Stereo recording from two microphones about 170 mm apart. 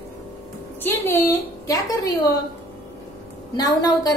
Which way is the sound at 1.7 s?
20° left (ahead or behind).